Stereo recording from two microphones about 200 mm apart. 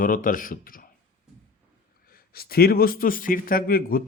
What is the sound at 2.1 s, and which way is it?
A man's voice, 50° left (ahead or behind).